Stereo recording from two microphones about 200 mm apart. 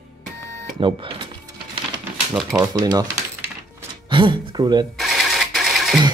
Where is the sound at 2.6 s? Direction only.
20° right (ahead or behind).